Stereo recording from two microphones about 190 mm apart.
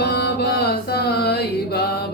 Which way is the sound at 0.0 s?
60° left (ahead or behind).